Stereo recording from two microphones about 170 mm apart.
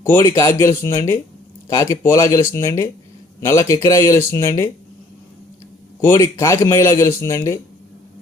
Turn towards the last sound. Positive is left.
turn(degrees=15)  # may be behind; listen again after turning